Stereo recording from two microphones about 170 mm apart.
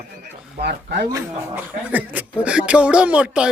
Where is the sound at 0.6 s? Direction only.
85° right.